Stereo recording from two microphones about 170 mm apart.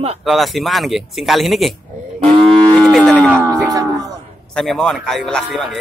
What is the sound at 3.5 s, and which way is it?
Cattle, 20° right (ahead or behind).